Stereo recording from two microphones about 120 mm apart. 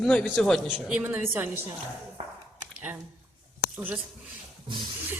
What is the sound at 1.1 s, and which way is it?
Speech, 20° right (ahead or behind).